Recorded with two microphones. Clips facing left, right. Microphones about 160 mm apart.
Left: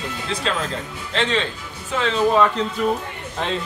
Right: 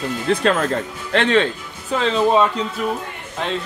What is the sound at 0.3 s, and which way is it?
Speech, 55° right (ahead or behind).